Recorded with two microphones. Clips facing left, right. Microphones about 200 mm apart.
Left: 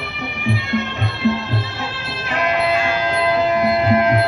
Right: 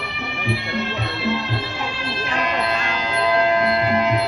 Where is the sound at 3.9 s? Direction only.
55° left (ahead or behind).